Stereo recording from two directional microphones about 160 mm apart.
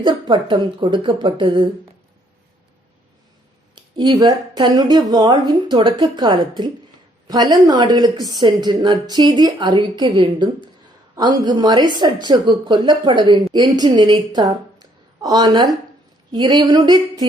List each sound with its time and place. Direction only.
0.0 s speech: 30° right (ahead or behind)
3.8 s a woman's voice: 30° right (ahead or behind)